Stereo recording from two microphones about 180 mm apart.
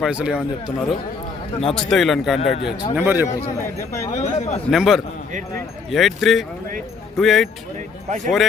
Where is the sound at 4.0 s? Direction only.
40° left (ahead or behind).